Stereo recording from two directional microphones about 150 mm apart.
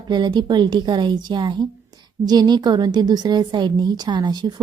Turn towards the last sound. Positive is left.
turn(degrees=-30)  # may be behind; listen again after turning